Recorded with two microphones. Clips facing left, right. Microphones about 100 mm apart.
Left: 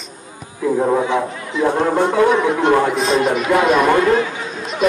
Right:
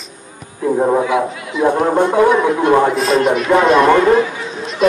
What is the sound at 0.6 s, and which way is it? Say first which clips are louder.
A man's voice: right 2 dB; 20° right (ahead or behind).